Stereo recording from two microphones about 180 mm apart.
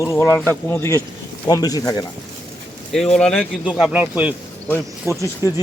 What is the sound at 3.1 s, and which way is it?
Speech, 5° left (ahead or behind).